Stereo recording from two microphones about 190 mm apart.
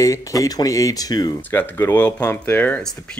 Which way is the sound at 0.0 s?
15° left (ahead or behind).